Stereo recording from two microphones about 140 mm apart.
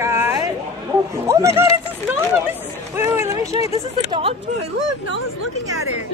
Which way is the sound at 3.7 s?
40° right (ahead or behind).